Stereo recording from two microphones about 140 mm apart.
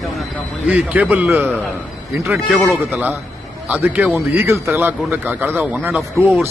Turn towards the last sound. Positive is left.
turn(degrees=-15)  # may be behind; listen again after turning